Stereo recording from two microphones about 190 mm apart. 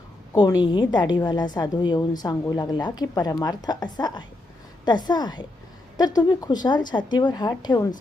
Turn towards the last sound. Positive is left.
turn(degrees=20)  # may be behind; listen again after turning